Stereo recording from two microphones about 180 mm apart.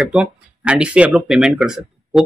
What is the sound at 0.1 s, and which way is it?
Speech, 5° right (ahead or behind).